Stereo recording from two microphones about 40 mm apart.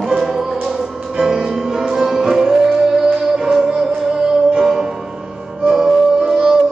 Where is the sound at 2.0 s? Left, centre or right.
Right.